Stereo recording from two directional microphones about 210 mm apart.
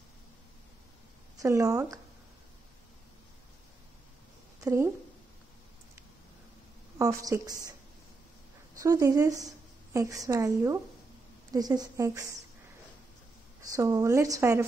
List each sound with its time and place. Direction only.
1.4 s a woman's voice: 15° right (ahead or behind)
4.6 s a woman's voice: 15° right (ahead or behind)
7.0 s a woman's voice: 15° right (ahead or behind)
8.8 s a woman's voice: 15° right (ahead or behind)
13.7 s a woman's voice: 15° right (ahead or behind)